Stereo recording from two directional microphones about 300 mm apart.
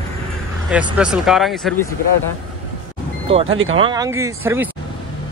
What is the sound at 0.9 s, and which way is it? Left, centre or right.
Speech, centre.